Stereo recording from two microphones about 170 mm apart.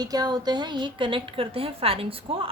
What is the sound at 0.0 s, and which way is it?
A woman's voice, 25° right (ahead or behind).